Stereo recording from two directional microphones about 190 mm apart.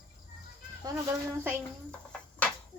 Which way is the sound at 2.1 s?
5° left (ahead or behind).